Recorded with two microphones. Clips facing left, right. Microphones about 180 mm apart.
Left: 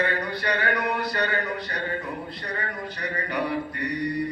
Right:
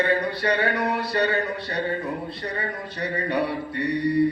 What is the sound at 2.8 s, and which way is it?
A man's voice, 30° right (ahead or behind).